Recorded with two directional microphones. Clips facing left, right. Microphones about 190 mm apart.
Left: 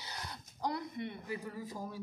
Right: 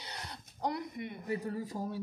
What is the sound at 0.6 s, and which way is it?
Speech, 20° right (ahead or behind).